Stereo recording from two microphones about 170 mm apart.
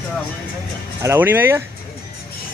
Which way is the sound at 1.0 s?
15° right (ahead or behind).